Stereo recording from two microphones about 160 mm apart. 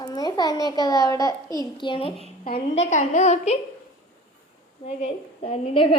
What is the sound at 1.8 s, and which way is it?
A woman's voice, 35° left (ahead or behind).